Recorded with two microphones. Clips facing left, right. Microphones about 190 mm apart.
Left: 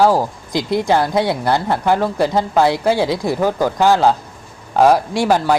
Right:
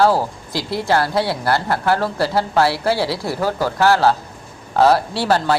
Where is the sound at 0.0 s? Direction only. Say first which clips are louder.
Left 2 dB; 15° left (ahead or behind).